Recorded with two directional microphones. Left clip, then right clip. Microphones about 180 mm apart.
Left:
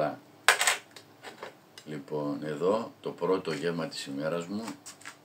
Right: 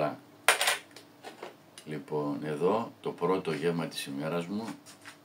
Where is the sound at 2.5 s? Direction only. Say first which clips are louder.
Left 1 dB; 15° right (ahead or behind).